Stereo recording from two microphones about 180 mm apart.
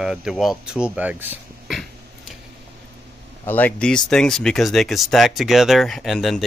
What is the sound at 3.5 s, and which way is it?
Speech, 10° left (ahead or behind).